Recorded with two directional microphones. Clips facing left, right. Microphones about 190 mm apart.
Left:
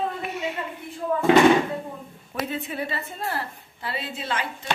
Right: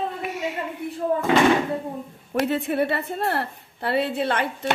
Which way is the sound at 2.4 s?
70° right (ahead or behind).